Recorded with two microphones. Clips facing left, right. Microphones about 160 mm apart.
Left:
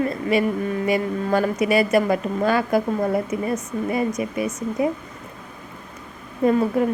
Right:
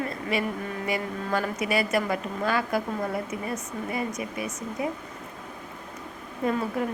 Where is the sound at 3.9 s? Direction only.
25° left (ahead or behind).